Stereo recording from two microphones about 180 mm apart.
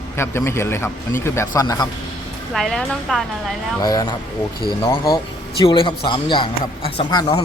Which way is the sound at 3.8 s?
20° left (ahead or behind).